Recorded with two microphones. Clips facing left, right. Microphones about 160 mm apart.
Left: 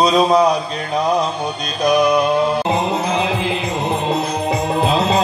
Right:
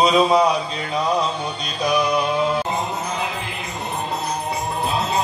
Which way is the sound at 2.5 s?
90° left.